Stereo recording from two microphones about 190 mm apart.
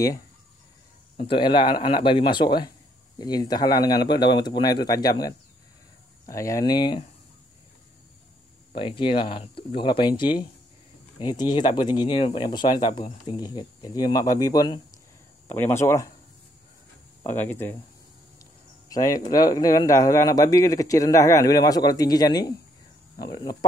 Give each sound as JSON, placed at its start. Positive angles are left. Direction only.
{"t": 1.1, "sound": "speech", "side_deg": 30}
{"t": 8.7, "sound": "speech", "side_deg": 25}
{"t": 17.2, "sound": "speech", "side_deg": 10}